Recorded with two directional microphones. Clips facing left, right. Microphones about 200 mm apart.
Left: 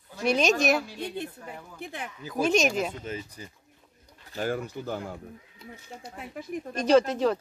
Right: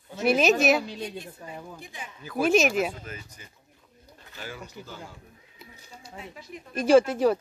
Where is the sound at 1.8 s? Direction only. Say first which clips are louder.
Left 5 dB; 60° left (ahead or behind).